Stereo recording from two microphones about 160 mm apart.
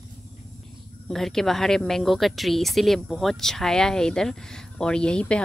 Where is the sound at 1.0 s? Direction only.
Centre (ahead or behind).